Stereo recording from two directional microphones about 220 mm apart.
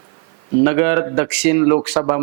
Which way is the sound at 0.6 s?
10° right (ahead or behind).